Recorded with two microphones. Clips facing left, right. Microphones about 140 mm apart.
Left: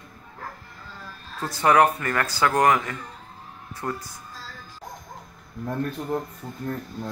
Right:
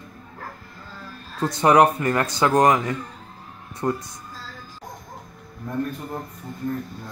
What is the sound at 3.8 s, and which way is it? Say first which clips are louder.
Speech: right 6 dB; 35° right (ahead or behind).